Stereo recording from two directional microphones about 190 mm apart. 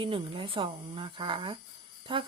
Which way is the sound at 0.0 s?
25° right (ahead or behind).